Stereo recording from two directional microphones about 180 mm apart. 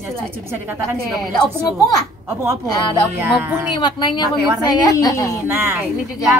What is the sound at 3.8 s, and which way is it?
A woman's voice, 25° left (ahead or behind).